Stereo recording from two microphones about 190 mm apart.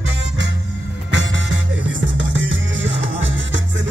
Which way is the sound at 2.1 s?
80° right.